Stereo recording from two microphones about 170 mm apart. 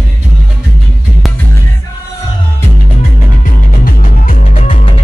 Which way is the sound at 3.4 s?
55° left (ahead or behind).